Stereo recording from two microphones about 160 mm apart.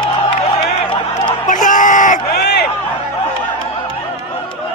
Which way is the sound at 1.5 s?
55° left (ahead or behind).